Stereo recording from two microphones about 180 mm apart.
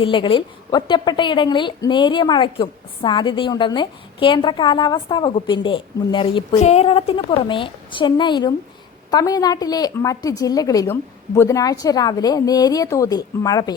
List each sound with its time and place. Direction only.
0.0 s a woman's voice: 25° left (ahead or behind)
6.6 s a woman's voice: 35° left (ahead or behind); by 13.7 s 20° left (ahead or behind)